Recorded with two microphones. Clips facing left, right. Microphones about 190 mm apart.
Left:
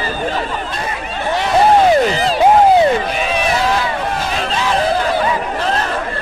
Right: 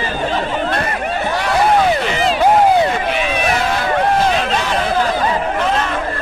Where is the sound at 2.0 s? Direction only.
40° left (ahead or behind).